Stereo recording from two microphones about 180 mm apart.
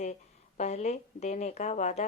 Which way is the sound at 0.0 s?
40° left (ahead or behind).